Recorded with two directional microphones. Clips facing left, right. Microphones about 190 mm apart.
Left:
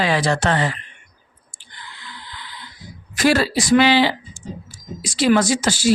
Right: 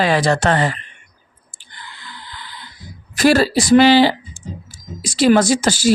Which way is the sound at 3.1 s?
35° right (ahead or behind).